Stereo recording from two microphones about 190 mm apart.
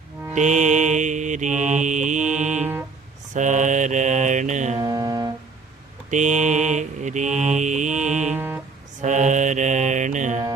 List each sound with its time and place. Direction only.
0.3 s mantra: 40° right (ahead or behind)
4.8 s mantra: 20° right (ahead or behind)
6.1 s mantra: 40° right (ahead or behind)
8.3 s music: 10° right (ahead or behind)
9.0 s mantra: 40° right (ahead or behind)